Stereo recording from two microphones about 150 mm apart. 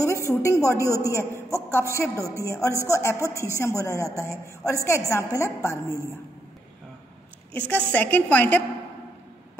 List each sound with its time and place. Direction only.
0.3 s a woman's voice: 20° left (ahead or behind)
7.5 s a woman's voice: 10° left (ahead or behind)